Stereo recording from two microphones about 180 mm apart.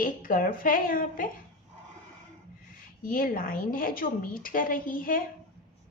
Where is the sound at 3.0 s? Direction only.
50° left (ahead or behind).